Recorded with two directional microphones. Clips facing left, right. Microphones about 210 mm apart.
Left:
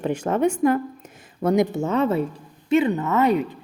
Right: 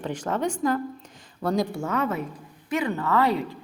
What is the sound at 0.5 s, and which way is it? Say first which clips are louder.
A woman's voice: left 5 dB; 25° left (ahead or behind).